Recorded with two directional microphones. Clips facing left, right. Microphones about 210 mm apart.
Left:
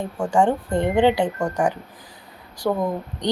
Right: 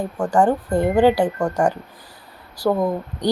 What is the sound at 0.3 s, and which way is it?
A woman's voice, 5° right (ahead or behind).